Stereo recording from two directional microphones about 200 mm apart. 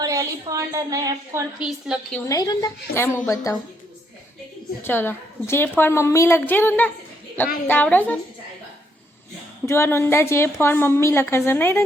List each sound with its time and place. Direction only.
0.0 s a woman's voice: 15° right (ahead or behind)
1.5 s a woman's voice: 5° right (ahead or behind)
2.2 s a woman's voice: 20° left (ahead or behind)
4.8 s a woman's voice: 10° left (ahead or behind)
9.6 s a woman's voice: 15° left (ahead or behind)